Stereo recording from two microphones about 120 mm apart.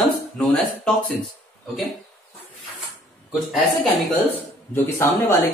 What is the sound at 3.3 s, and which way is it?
Speech, 5° right (ahead or behind).